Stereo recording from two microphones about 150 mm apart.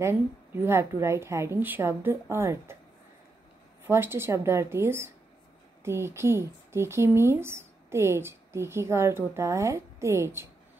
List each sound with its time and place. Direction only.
0.0 s speech: 15° right (ahead or behind)
3.8 s speech: 15° right (ahead or behind)